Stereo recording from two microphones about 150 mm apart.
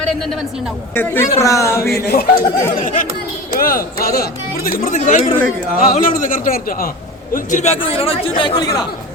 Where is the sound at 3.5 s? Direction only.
75° left (ahead or behind).